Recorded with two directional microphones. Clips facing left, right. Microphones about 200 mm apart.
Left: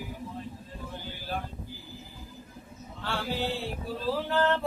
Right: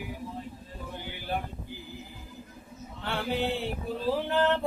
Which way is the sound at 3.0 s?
20° right (ahead or behind).